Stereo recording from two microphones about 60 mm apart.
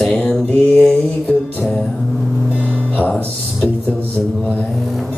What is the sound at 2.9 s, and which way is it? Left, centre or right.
Music, left.